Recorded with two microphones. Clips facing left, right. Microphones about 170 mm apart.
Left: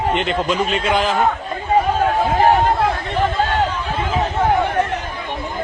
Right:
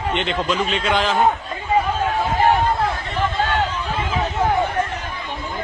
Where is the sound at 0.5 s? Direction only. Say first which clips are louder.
Left 2 dB; 45° left (ahead or behind).